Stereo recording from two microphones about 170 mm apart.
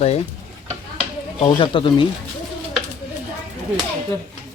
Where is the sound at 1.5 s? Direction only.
30° left (ahead or behind).